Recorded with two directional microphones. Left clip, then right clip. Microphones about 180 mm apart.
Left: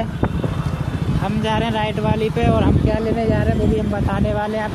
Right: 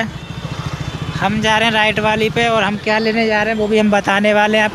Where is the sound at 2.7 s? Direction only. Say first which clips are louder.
Right 4 dB; 25° right (ahead or behind).